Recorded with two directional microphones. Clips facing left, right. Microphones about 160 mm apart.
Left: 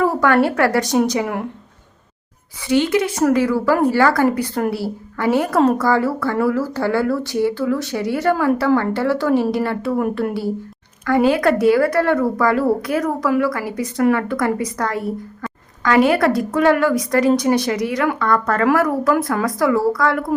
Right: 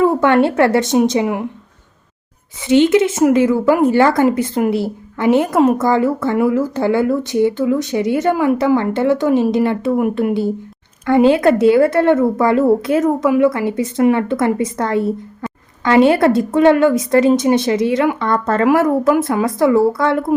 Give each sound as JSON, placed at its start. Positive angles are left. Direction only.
{"t": 0.0, "sound": "a woman's voice", "side_deg": -25}
{"t": 2.6, "sound": "a woman's voice", "side_deg": -20}